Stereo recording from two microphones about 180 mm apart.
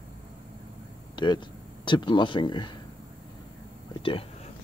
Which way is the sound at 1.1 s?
25° left (ahead or behind).